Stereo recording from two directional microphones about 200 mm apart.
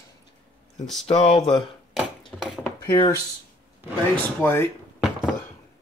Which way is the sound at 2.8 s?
20° left (ahead or behind).